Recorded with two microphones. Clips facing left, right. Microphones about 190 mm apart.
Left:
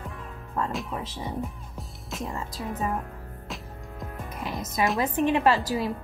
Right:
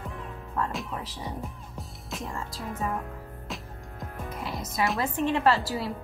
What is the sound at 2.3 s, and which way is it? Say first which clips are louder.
Speech: left 2 dB; 20° left (ahead or behind).